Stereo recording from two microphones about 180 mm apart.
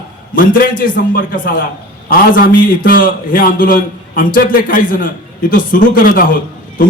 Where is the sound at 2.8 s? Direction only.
50° left (ahead or behind).